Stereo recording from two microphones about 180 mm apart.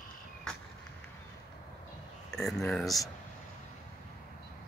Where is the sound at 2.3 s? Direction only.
Centre (ahead or behind).